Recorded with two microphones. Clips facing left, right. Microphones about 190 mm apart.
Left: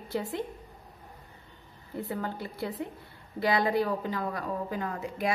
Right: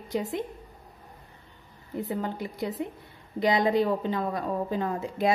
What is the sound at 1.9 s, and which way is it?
A woman's voice, 20° right (ahead or behind).